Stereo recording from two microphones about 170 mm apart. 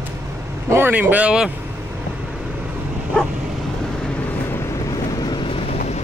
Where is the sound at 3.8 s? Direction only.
5° left (ahead or behind); by 5.8 s 35° left (ahead or behind).